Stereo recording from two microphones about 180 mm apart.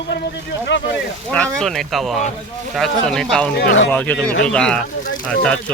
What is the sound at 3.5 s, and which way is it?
Speech, 90° left.